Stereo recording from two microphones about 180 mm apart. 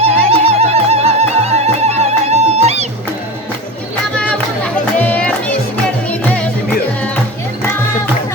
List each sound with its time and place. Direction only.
0.0 s music: 35° right (ahead or behind)
4.2 s music: 5° left (ahead or behind)